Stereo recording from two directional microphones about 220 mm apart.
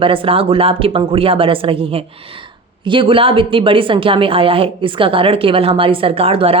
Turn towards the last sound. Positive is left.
turn(degrees=-25)  # may be behind; listen again after turning